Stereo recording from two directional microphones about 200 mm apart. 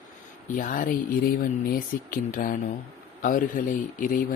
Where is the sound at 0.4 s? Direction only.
40° left (ahead or behind).